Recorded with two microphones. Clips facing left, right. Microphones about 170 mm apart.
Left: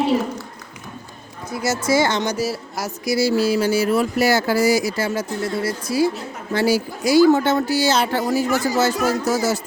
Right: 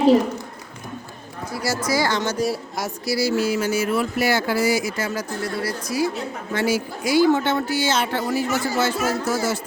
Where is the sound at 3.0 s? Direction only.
25° left (ahead or behind).